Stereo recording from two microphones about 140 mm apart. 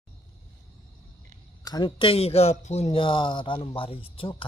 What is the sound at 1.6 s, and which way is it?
Speech, 30° left (ahead or behind).